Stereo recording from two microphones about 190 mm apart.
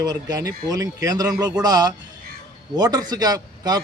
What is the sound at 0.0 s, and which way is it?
A man's voice, 20° right (ahead or behind).